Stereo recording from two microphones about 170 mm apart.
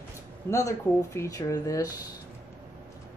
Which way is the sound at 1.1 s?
20° left (ahead or behind).